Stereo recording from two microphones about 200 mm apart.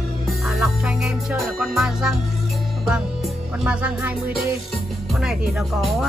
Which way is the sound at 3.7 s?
5° right (ahead or behind).